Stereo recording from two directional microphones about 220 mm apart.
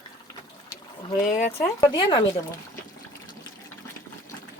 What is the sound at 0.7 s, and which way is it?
Speech, 15° left (ahead or behind).